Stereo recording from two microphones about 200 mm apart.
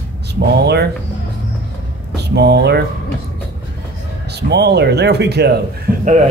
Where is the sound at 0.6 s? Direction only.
55° right (ahead or behind).